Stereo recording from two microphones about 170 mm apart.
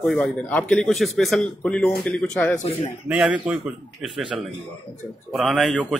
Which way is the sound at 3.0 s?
5° right (ahead or behind).